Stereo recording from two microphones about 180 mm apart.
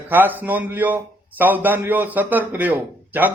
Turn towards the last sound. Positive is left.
turn(degrees=-10)  # may be behind; listen again after turning